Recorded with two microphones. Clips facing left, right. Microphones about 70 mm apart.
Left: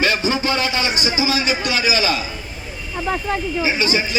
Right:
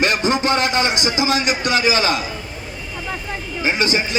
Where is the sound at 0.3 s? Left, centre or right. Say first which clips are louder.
Right 2 dB; right.